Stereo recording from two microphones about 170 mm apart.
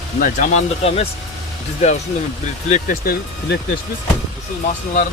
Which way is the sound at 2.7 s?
50° left (ahead or behind).